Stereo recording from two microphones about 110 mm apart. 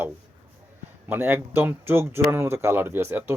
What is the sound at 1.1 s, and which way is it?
Speech, 20° right (ahead or behind).